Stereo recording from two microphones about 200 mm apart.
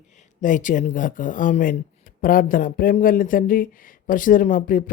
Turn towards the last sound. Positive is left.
turn(degrees=40)  # may be behind; listen again after turning